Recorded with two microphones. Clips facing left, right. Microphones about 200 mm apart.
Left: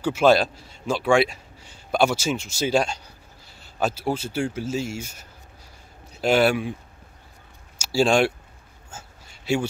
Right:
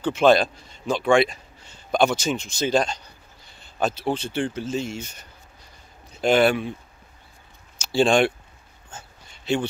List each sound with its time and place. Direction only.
0.0 s a man's voice: 5° left (ahead or behind)
7.8 s speech: 5° left (ahead or behind)
8.9 s a sound: 5° left (ahead or behind)